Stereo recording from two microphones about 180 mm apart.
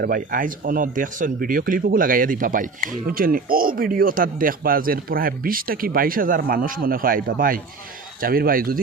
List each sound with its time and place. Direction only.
0.0 s speech: 50° right (ahead or behind)